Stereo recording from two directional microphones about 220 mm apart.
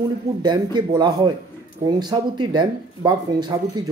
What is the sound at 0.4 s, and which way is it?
Speech, 20° right (ahead or behind).